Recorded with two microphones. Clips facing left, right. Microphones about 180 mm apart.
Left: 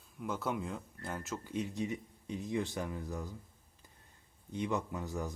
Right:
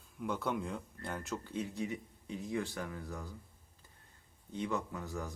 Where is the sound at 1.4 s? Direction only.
15° left (ahead or behind).